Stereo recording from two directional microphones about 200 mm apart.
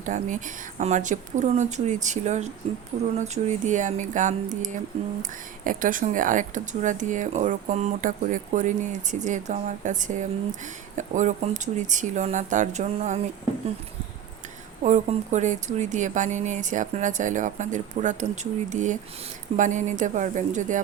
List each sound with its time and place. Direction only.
0.0 s speech: 40° right (ahead or behind)
5.6 s speech: 40° right (ahead or behind)
14.8 s speech: 35° right (ahead or behind)